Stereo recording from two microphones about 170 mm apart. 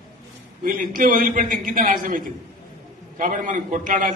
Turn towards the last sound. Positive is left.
turn(degrees=-50)  # may be behind; listen again after turning